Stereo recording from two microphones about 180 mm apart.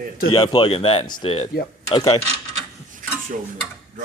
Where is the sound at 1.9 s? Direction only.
20° left (ahead or behind).